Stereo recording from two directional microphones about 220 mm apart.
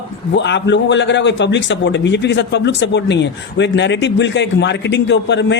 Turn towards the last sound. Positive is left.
turn(degrees=55)  # may be behind; listen again after turning